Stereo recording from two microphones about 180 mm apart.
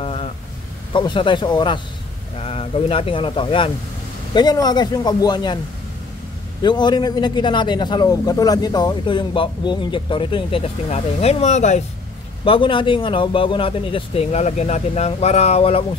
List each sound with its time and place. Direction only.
0.0 s a sound: 30° left (ahead or behind)
0.9 s a man's voice: 25° left (ahead or behind)
6.6 s a man's voice: 25° left (ahead or behind); by 11.8 s 40° left (ahead or behind)
12.4 s speech: 30° left (ahead or behind)